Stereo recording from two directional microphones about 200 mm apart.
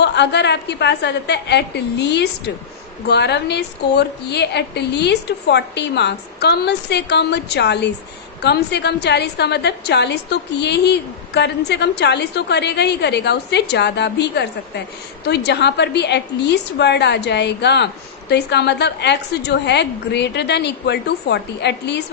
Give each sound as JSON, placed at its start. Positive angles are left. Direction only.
{"t": 0.0, "sound": "a woman's voice", "side_deg": 60}